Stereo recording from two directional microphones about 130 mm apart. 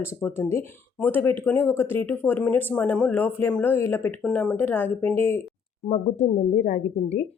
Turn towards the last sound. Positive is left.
turn(degrees=65)  # may be behind; listen again after turning